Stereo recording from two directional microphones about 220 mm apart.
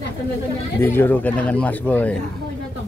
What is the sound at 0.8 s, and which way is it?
Speech, 10° left (ahead or behind).